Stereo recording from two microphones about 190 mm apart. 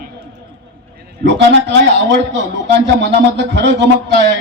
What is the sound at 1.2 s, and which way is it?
A man's voice, 65° right (ahead or behind).